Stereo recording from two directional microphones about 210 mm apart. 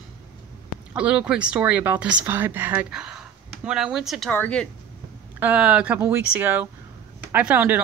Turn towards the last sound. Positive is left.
turn(degrees=-10)  # may be behind; listen again after turning